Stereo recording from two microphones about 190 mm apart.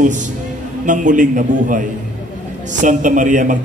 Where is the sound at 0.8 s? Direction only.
40° right (ahead or behind).